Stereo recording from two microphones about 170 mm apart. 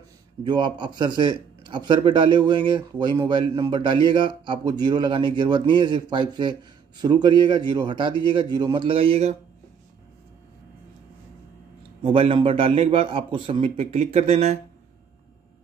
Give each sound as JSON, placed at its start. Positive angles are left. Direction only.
{"t": 0.4, "sound": "a man's voice", "side_deg": -25}
{"t": 12.0, "sound": "a man's voice", "side_deg": -30}